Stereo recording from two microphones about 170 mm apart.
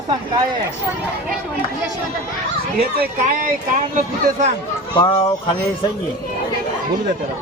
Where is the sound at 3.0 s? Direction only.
55° right (ahead or behind).